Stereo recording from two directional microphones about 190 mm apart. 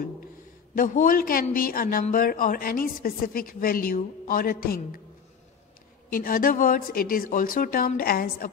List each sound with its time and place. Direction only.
0.7 s speech: 45° left (ahead or behind)
6.1 s speech: 50° left (ahead or behind)